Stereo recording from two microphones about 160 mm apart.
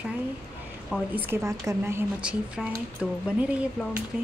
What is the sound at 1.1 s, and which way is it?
Speech, 15° right (ahead or behind).